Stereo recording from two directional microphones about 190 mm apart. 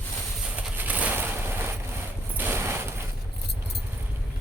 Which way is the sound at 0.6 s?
10° right (ahead or behind).